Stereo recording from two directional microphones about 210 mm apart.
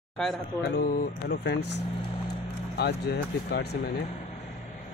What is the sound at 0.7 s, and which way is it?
Speech, 45° left (ahead or behind).